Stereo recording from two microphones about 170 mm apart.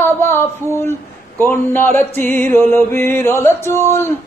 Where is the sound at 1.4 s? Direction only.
15° left (ahead or behind).